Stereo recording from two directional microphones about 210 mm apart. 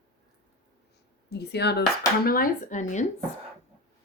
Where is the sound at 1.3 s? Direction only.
50° left (ahead or behind); by 3.1 s 35° left (ahead or behind).